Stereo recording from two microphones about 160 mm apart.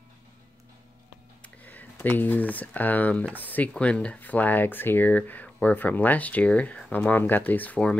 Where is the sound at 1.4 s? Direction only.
10° left (ahead or behind).